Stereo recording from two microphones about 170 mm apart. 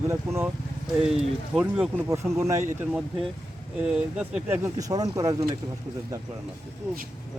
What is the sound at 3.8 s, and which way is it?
Speech, 5° right (ahead or behind).